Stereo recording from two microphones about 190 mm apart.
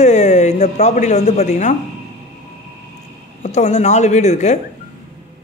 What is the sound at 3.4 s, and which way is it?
A man's voice, 35° left (ahead or behind).